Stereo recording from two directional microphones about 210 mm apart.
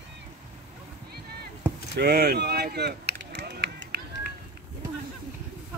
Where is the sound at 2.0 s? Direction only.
50° right (ahead or behind).